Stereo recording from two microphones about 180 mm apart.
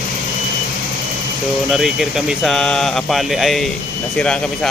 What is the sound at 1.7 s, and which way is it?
Speech, centre (ahead or behind).